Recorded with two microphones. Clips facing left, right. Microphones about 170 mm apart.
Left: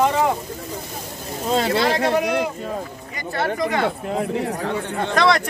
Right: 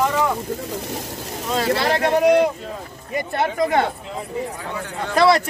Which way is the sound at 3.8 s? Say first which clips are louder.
Left 5 dB; 65° left (ahead or behind).